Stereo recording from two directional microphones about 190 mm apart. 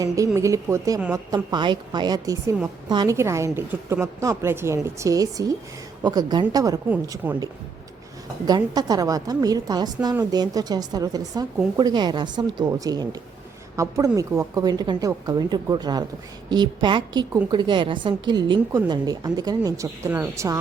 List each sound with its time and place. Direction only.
0.3 s a woman's voice: 15° right (ahead or behind)
8.4 s a woman's voice: 20° right (ahead or behind)